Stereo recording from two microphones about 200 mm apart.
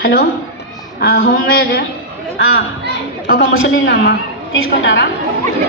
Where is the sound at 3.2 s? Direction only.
50° left (ahead or behind).